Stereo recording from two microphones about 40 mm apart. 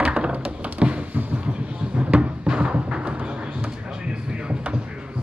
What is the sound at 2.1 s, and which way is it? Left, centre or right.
Music, right.